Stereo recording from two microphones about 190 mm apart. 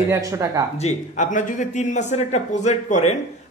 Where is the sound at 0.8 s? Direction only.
40° left (ahead or behind).